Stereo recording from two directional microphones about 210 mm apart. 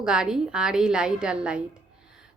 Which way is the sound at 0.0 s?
5° right (ahead or behind).